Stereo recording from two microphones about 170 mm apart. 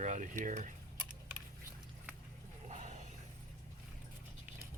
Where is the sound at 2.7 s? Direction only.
45° right (ahead or behind).